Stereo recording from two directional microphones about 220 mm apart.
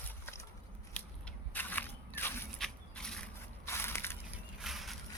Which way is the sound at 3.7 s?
10° left (ahead or behind).